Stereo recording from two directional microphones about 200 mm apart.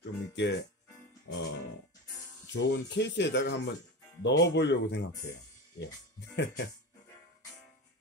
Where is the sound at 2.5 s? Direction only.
60° left (ahead or behind).